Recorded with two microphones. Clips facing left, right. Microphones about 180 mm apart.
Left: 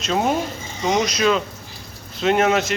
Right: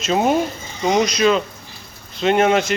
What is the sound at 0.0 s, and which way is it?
Speech, 5° right (ahead or behind).